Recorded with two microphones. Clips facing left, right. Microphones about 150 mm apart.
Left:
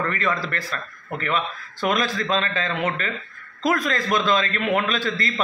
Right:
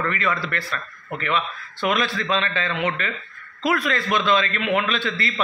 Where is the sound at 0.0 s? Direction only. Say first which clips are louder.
Even; 40° left (ahead or behind).